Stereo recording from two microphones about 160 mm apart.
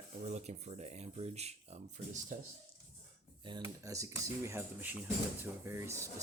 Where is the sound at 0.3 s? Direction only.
45° right (ahead or behind).